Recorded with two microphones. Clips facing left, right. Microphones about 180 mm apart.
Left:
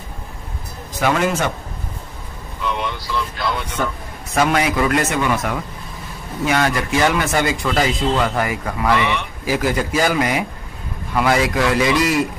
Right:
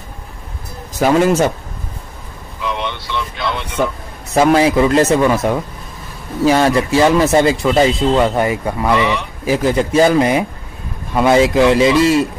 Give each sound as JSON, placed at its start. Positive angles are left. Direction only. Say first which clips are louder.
{"t": 1.0, "sound": "speech", "louder": "right 6 dB", "side_deg": -35}
{"t": 2.6, "sound": "speech", "louder": "right 2 dB", "side_deg": 0}
{"t": 4.3, "sound": "speech", "louder": "right 6 dB", "side_deg": -30}